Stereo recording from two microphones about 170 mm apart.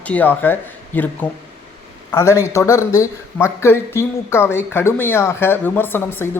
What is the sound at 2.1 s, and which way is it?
A man's voice, 20° left (ahead or behind).